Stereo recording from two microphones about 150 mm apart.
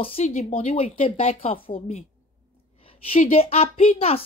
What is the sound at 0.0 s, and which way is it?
Speech, 40° left (ahead or behind).